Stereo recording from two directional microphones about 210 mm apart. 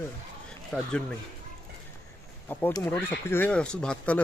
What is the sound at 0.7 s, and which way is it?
Speech, 5° left (ahead or behind).